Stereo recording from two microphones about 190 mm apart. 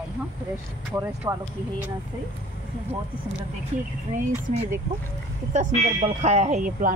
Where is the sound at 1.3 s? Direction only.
15° right (ahead or behind).